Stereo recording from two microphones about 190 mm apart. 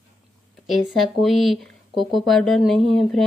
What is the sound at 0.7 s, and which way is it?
Speech, centre (ahead or behind).